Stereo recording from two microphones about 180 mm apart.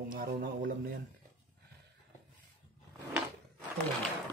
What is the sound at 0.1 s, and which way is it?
Speech, 55° right (ahead or behind).